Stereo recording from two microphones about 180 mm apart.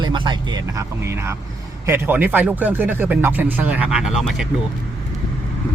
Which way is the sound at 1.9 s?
10° right (ahead or behind).